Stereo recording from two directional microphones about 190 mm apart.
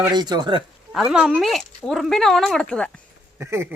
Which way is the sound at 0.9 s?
5° right (ahead or behind).